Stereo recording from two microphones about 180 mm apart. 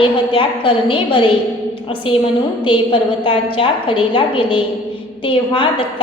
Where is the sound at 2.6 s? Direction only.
30° left (ahead or behind).